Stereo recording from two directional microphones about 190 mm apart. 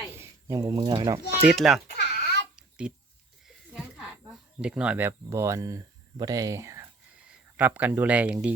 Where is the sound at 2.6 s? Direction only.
5° right (ahead or behind).